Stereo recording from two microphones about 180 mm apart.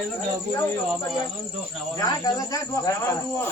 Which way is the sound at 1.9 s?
20° left (ahead or behind).